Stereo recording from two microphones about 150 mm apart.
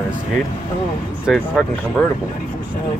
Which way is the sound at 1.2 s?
Centre (ahead or behind).